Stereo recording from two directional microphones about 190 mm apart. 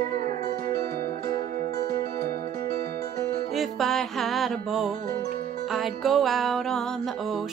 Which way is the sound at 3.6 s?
Centre (ahead or behind).